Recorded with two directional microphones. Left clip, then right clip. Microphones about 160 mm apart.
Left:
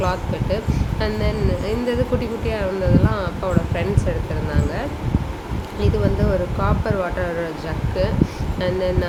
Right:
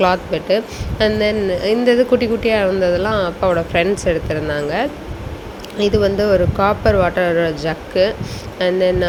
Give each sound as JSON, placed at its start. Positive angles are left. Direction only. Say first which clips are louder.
{"t": 0.0, "sound": "speech", "louder": "right 8 dB", "side_deg": -40}